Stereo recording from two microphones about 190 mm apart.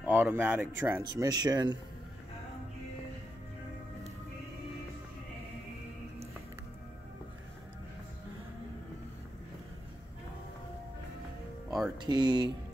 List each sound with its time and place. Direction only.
0.0 s speech: 10° right (ahead or behind)
12.0 s speech: 20° right (ahead or behind)